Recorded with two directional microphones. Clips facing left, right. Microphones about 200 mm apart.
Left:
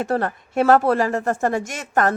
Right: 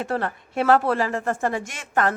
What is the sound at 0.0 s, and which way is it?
Speech, 45° left (ahead or behind).